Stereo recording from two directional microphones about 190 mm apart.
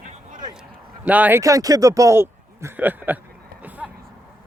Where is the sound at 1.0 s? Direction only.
10° right (ahead or behind).